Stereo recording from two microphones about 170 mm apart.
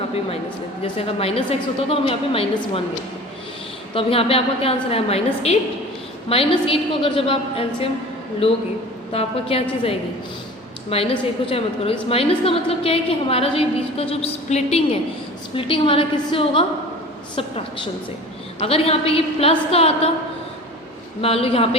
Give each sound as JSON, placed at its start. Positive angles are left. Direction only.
{"t": 0.8, "sound": "a woman's voice", "side_deg": 35}
{"t": 3.9, "sound": "a woman's voice", "side_deg": 35}
{"t": 21.2, "sound": "a woman's voice", "side_deg": 35}